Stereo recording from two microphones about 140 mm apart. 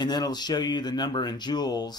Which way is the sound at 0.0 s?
30° left (ahead or behind).